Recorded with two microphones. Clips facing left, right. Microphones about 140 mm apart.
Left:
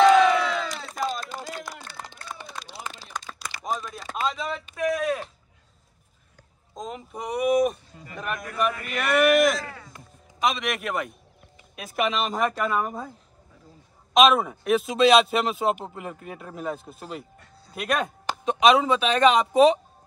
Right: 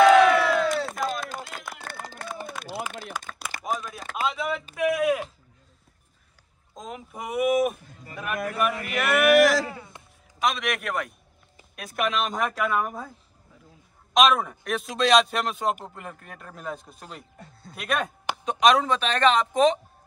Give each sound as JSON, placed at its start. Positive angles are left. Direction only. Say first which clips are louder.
{"t": 0.3, "sound": "crowd", "louder": "right 3 dB", "side_deg": 0}
{"t": 0.9, "sound": "a sound", "louder": "even", "side_deg": 0}
{"t": 1.7, "sound": "run", "louder": "right 2 dB", "side_deg": -60}
{"t": 3.6, "sound": "a sound", "louder": "even", "side_deg": -5}
{"t": 4.7, "sound": "speech", "louder": "right 2 dB", "side_deg": -10}
{"t": 6.7, "sound": "speech", "louder": "left 3 dB", "side_deg": 0}
{"t": 9.3, "sound": "speech", "louder": "right 2 dB", "side_deg": -75}
{"t": 9.7, "sound": "a sound", "louder": "right 3 dB", "side_deg": -25}
{"t": 10.4, "sound": "speech", "louder": "left 1 dB", "side_deg": 0}
{"t": 14.1, "sound": "speech", "louder": "left 2 dB", "side_deg": 5}